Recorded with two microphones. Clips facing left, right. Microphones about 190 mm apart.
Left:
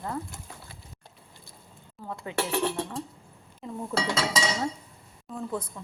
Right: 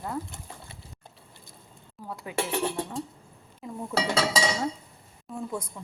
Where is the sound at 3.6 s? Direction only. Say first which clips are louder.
Right 1 dB; 5° right (ahead or behind).